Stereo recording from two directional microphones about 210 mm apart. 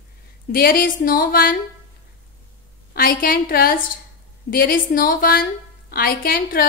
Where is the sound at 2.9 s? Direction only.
45° left (ahead or behind).